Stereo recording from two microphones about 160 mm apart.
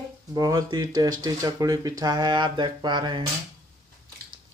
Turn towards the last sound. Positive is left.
turn(degrees=-30)  # may be behind; listen again after turning